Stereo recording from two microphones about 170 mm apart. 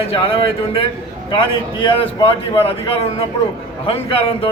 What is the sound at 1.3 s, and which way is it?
A man's voice, 30° left (ahead or behind).